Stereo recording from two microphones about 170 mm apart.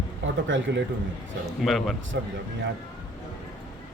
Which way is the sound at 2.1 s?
90° right.